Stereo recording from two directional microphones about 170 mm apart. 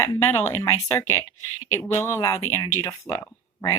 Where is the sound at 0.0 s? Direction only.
15° left (ahead or behind).